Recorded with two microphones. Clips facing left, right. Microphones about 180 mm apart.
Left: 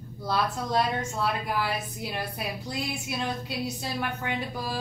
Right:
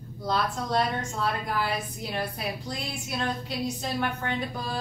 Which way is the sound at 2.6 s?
10° left (ahead or behind).